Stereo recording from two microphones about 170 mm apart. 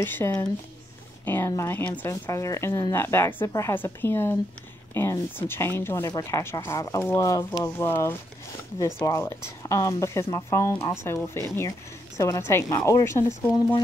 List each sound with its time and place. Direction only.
0.0 s speech: 10° left (ahead or behind)